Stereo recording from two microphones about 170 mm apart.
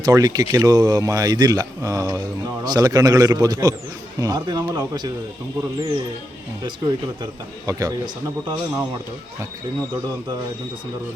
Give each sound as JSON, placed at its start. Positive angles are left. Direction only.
{"t": 0.0, "sound": "speech", "side_deg": -20}
{"t": 6.6, "sound": "speech", "side_deg": -25}